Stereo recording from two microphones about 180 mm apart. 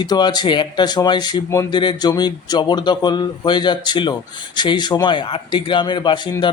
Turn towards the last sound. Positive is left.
turn(degrees=25)  # may be behind; listen again after turning